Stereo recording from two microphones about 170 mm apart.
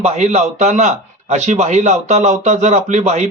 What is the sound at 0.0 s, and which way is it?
A man's voice, 40° right (ahead or behind).